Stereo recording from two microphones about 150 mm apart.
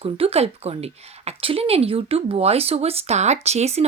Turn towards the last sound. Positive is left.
turn(degrees=-45)  # may be behind; listen again after turning